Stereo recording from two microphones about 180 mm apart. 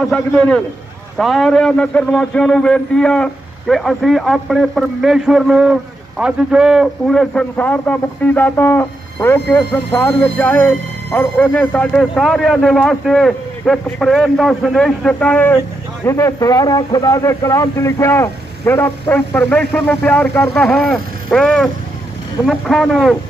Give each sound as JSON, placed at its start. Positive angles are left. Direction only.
{"t": 0.3, "sound": "a man's voice", "side_deg": 5}